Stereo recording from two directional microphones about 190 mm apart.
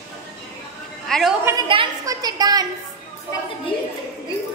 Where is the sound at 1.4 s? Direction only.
15° right (ahead or behind).